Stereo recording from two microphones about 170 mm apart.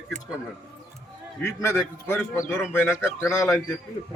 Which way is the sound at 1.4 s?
15° left (ahead or behind).